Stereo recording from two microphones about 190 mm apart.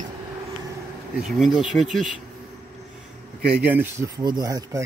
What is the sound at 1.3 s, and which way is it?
Speech, centre (ahead or behind).